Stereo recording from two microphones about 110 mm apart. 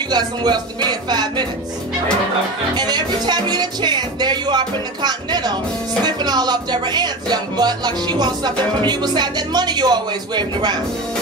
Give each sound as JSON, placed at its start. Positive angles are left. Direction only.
{"t": 0.1, "sound": "speech", "side_deg": -40}
{"t": 2.7, "sound": "speech", "side_deg": -40}